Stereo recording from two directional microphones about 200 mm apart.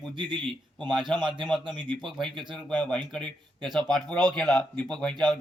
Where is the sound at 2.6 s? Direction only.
5° left (ahead or behind).